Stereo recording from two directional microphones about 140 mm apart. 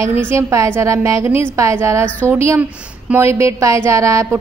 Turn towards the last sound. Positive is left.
turn(degrees=-20)  # may be behind; listen again after turning